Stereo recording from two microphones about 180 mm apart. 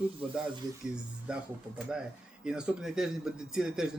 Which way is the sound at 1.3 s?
5° right (ahead or behind).